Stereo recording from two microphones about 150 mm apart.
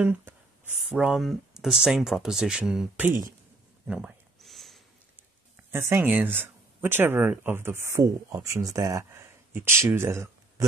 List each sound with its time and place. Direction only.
0.0 s speech: 10° right (ahead or behind)
3.8 s a sound: 5° right (ahead or behind)
5.7 s speech: 15° right (ahead or behind)